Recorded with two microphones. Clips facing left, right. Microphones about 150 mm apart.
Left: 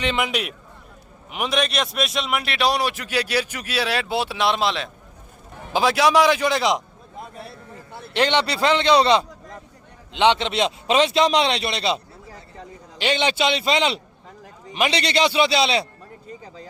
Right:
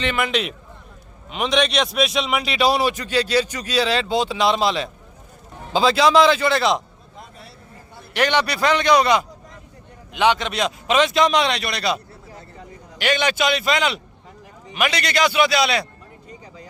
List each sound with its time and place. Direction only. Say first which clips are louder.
0.0 s a man's voice: right 1 dB; 15° left (ahead or behind)
8.1 s a man's voice: even; 25° left (ahead or behind)
13.0 s a man's voice: right 1 dB; 25° left (ahead or behind)